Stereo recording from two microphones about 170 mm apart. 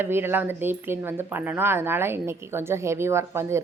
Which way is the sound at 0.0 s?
15° right (ahead or behind).